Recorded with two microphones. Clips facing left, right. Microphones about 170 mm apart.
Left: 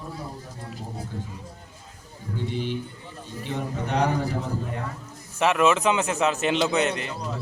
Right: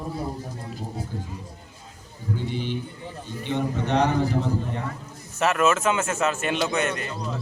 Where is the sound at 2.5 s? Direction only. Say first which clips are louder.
Even; centre (ahead or behind).